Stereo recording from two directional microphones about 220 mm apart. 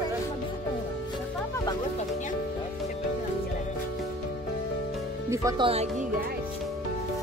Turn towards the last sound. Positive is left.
turn(degrees=-25)  # may be behind; listen again after turning